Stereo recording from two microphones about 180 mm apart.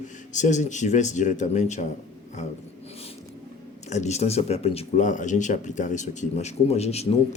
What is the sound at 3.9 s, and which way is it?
Speech, 40° left (ahead or behind).